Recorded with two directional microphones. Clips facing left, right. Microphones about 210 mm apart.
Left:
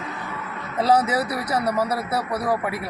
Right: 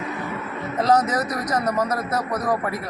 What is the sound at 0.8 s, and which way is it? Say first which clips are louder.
Speech: even; 10° left (ahead or behind).